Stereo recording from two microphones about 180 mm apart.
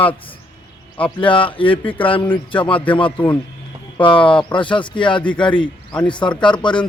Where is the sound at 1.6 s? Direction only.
10° left (ahead or behind).